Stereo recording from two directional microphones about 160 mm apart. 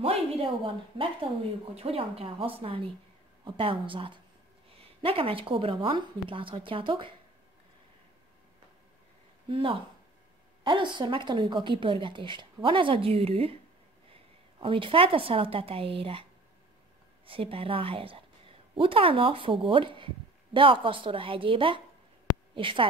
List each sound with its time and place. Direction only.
0.0 s a woman's voice: 35° right (ahead or behind)
9.5 s a woman's voice: 35° right (ahead or behind)
14.6 s a woman's voice: 35° right (ahead or behind)
17.3 s a woman's voice: 35° right (ahead or behind)